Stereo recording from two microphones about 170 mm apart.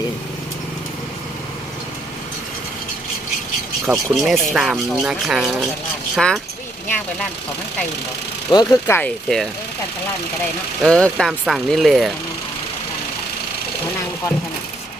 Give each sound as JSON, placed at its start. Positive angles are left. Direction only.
{"t": 3.8, "sound": "speech", "side_deg": -5}
{"t": 8.4, "sound": "speech", "side_deg": 20}
{"t": 9.0, "sound": "speech", "side_deg": 5}
{"t": 10.8, "sound": "speech", "side_deg": 5}